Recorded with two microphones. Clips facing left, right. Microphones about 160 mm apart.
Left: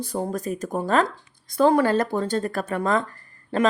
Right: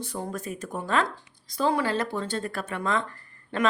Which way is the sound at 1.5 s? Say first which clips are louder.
Left 7 dB; 50° left (ahead or behind).